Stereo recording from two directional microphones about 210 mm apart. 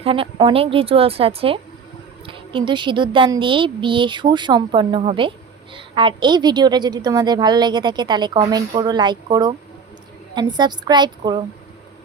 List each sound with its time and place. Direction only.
0.0 s a woman's voice: 25° right (ahead or behind)